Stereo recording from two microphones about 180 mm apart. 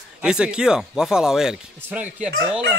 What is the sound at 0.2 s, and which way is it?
Speech, 5° right (ahead or behind).